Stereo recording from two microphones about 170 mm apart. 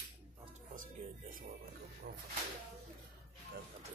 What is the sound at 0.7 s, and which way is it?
Music, 55° right (ahead or behind).